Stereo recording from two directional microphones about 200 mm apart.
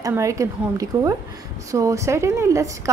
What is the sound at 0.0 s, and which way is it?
A woman's voice, 15° right (ahead or behind).